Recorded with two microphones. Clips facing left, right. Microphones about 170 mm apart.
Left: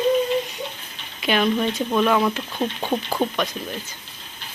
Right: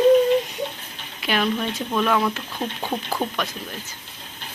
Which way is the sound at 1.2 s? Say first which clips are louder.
Left 3 dB; centre (ahead or behind).